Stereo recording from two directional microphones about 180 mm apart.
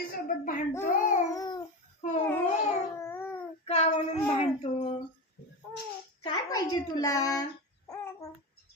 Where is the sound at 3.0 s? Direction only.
15° left (ahead or behind).